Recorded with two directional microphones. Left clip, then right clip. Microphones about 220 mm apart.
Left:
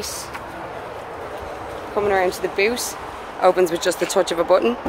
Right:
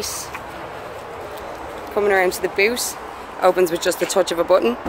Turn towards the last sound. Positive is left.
turn(degrees=-5)  # may be behind; listen again after turning